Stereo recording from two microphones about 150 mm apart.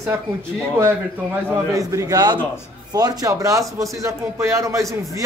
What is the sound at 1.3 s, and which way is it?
A man's voice, 20° right (ahead or behind).